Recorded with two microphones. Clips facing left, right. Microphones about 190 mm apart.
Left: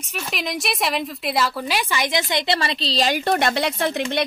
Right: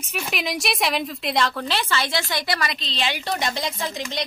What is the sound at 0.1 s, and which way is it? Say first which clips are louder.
A woman's voice: even; 5° right (ahead or behind).